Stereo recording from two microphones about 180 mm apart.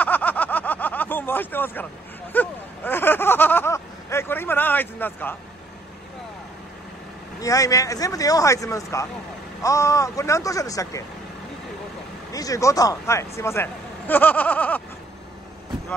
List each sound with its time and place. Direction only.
0.0 s a sound: 10° left (ahead or behind)
7.3 s speech: 20° left (ahead or behind)
12.3 s speech: 20° left (ahead or behind)